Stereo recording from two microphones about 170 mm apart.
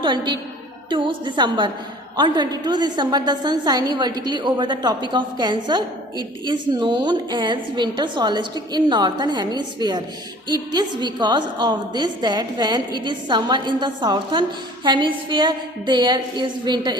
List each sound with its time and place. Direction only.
0.0 s a woman's voice: 25° right (ahead or behind)